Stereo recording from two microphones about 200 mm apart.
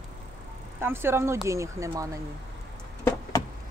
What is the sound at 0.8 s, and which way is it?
Speech, 10° right (ahead or behind).